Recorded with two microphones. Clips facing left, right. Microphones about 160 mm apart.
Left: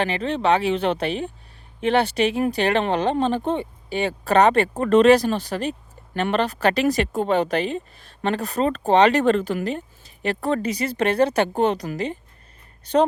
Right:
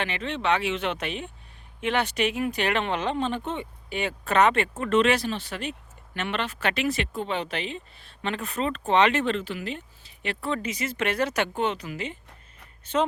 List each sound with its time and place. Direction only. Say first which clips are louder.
0.0 s speech: left 6 dB; 35° left (ahead or behind)